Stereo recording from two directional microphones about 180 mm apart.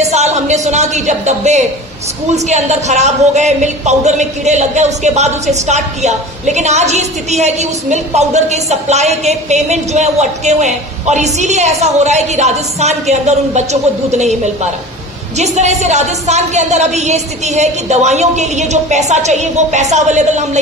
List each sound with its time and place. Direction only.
0.0 s a man's voice: 40° right (ahead or behind)